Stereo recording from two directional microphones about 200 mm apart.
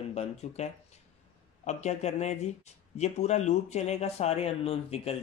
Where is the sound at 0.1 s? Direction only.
30° left (ahead or behind).